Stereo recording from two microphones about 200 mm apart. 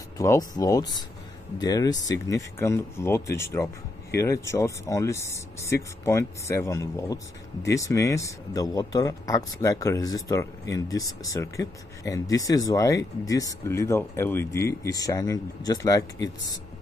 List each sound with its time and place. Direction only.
0.2 s speech: 15° left (ahead or behind)